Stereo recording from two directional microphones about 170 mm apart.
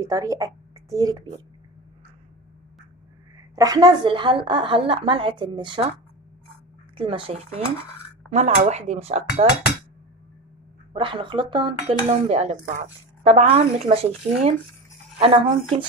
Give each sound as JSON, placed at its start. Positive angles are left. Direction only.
{"t": 0.0, "sound": "a woman's voice", "side_deg": -20}
{"t": 3.5, "sound": "a woman's voice", "side_deg": -20}
{"t": 7.0, "sound": "speech", "side_deg": -30}
{"t": 10.9, "sound": "a woman's voice", "side_deg": -30}
{"t": 12.3, "sound": "speech", "side_deg": -40}